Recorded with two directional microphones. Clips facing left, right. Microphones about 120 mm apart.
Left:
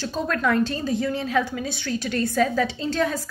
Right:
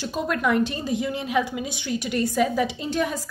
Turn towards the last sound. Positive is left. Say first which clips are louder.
# left 1 dB
turn(degrees=-15)  # may be behind; listen again after turning